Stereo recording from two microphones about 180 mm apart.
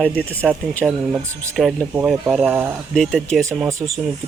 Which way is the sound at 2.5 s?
10° right (ahead or behind).